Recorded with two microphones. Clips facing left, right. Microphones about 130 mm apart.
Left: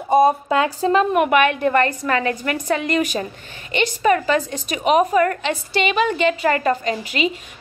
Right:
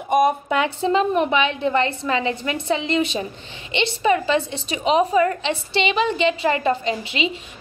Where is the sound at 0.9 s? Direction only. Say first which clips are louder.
Left 3 dB; 30° right (ahead or behind).